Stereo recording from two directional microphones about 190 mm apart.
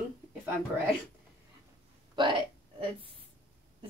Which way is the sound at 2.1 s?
25° right (ahead or behind).